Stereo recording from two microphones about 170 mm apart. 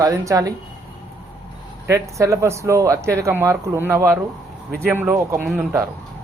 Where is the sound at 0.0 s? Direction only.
20° right (ahead or behind).